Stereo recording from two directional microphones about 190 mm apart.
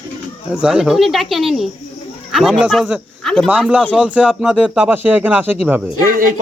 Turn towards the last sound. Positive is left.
turn(degrees=-45)  # may be behind; listen again after turning